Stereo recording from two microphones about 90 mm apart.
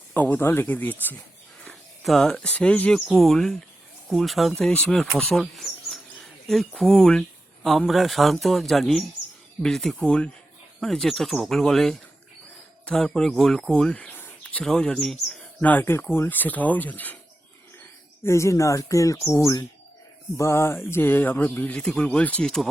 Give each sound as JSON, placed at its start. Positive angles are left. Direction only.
{"t": 0.1, "sound": "speech", "side_deg": 20}
{"t": 1.6, "sound": "cricket", "side_deg": 5}
{"t": 2.3, "sound": "speech", "side_deg": 15}
{"t": 3.2, "sound": "speech", "side_deg": 0}
{"t": 14.2, "sound": "a sound", "side_deg": 20}
{"t": 14.6, "sound": "speech", "side_deg": 10}
{"t": 15.6, "sound": "speech", "side_deg": 20}
{"t": 18.2, "sound": "speech", "side_deg": 30}